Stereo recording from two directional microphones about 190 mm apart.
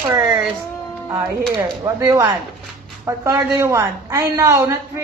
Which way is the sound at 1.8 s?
15° right (ahead or behind).